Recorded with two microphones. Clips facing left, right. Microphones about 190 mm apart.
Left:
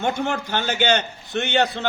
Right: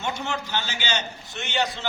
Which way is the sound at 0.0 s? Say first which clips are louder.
Left 6 dB; 55° left (ahead or behind).